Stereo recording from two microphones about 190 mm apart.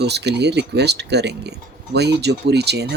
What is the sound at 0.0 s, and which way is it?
Speech, 60° right (ahead or behind).